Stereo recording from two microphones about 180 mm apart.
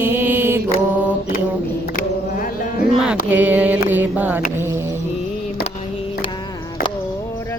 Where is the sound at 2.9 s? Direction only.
5° right (ahead or behind).